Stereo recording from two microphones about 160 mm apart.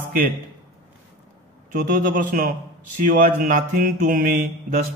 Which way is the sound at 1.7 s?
60° right (ahead or behind).